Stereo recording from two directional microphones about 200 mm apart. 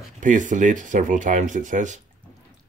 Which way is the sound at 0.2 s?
40° right (ahead or behind).